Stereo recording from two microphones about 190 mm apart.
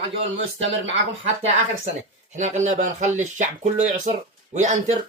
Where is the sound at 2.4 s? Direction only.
40° right (ahead or behind).